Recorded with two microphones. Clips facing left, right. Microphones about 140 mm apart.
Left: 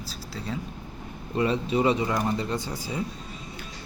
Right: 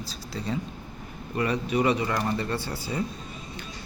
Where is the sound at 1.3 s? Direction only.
25° left (ahead or behind).